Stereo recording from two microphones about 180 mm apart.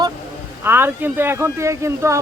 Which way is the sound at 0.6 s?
10° right (ahead or behind).